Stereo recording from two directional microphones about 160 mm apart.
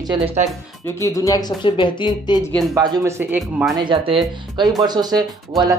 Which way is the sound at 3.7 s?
30° right (ahead or behind).